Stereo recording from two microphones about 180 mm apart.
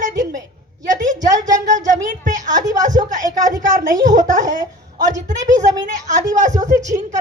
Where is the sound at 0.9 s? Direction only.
45° right (ahead or behind).